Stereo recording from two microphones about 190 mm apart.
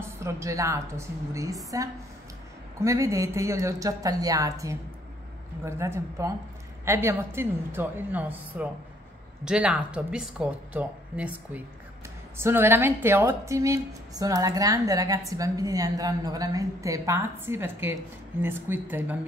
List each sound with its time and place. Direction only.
0.0 s a woman's voice: 15° right (ahead or behind)
2.8 s a woman's voice: 15° right (ahead or behind)